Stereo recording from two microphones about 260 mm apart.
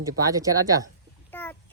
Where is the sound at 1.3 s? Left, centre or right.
Centre.